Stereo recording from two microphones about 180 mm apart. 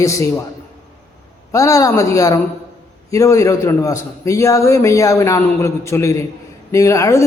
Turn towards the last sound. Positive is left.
turn(degrees=15)  # may be behind; listen again after turning